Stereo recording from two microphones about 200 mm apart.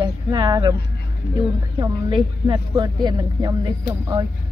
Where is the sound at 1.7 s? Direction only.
20° right (ahead or behind).